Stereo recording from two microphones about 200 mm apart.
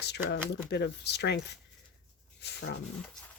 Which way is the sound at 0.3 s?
60° left (ahead or behind).